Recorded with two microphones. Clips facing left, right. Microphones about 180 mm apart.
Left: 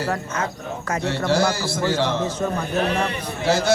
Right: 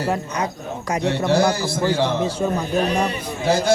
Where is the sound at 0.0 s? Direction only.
15° right (ahead or behind).